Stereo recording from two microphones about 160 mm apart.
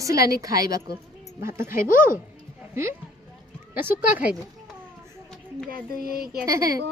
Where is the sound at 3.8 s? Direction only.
10° right (ahead or behind).